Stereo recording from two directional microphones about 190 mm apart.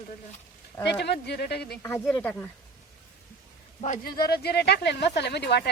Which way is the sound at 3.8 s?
45° left (ahead or behind).